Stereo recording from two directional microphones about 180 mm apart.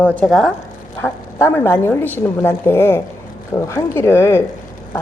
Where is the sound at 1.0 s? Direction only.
15° left (ahead or behind).